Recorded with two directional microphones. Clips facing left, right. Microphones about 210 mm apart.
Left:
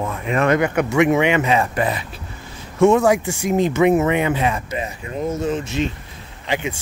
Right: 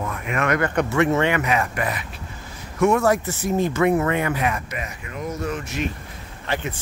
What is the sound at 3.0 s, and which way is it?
Speech, 15° left (ahead or behind).